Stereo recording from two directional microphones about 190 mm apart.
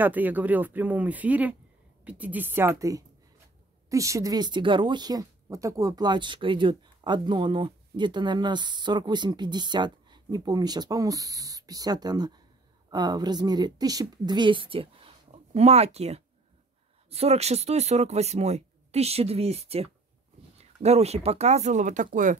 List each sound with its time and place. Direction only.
0.0 s speech: 10° right (ahead or behind); by 22.4 s 45° right (ahead or behind)